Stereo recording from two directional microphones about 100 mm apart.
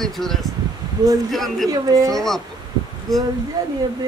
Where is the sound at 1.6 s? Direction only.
35° right (ahead or behind).